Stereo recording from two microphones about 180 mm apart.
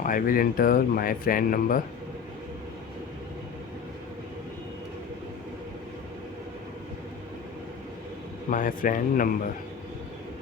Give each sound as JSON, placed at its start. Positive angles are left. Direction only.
{"t": 0.0, "sound": "speech", "side_deg": 50}
{"t": 8.4, "sound": "speech", "side_deg": 50}